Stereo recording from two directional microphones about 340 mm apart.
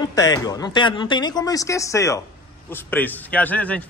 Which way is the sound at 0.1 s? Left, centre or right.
Centre.